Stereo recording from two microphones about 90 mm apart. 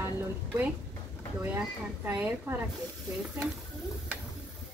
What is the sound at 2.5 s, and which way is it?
Speech, 30° right (ahead or behind).